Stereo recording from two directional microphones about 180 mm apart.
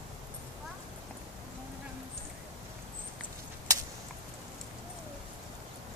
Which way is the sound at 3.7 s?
20° right (ahead or behind).